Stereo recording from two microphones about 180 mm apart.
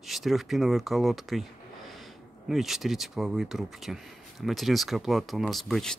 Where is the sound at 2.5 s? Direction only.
Centre (ahead or behind).